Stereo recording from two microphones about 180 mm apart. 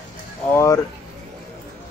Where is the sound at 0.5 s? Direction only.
15° left (ahead or behind).